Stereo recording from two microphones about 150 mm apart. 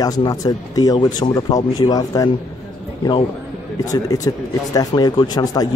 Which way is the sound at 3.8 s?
25° left (ahead or behind).